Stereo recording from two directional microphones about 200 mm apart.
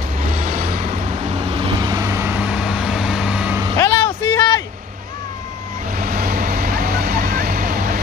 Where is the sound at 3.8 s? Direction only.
20° left (ahead or behind).